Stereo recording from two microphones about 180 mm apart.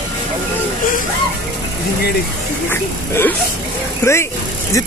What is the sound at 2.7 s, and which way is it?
Speech, 10° left (ahead or behind).